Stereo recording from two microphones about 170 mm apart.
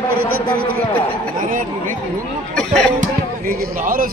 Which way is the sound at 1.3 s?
50° right (ahead or behind).